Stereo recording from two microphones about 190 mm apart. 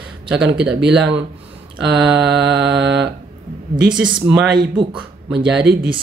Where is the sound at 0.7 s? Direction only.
65° right (ahead or behind).